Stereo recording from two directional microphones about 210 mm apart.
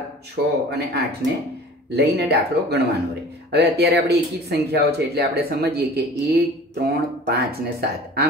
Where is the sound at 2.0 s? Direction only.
55° right (ahead or behind).